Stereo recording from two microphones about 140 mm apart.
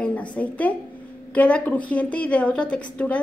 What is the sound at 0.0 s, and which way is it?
A woman's voice, 10° left (ahead or behind).